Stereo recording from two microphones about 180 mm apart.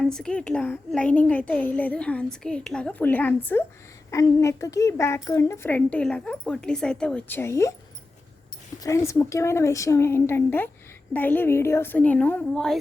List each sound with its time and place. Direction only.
0.0 s a child's voice: 5° left (ahead or behind)
8.8 s a child's voice: 15° left (ahead or behind)